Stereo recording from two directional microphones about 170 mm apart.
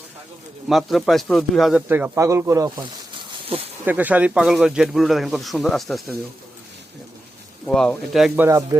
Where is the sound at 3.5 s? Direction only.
30° right (ahead or behind).